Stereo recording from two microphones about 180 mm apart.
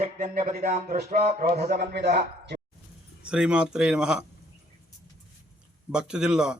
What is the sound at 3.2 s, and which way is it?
Speech, 5° right (ahead or behind).